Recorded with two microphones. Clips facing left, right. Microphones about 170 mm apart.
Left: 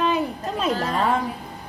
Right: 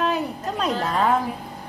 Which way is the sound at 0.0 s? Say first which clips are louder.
Left 1 dB; centre (ahead or behind).